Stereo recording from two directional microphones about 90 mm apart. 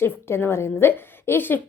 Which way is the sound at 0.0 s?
25° left (ahead or behind).